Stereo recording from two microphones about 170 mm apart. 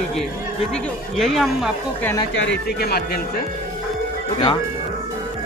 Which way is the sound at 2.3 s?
90° left.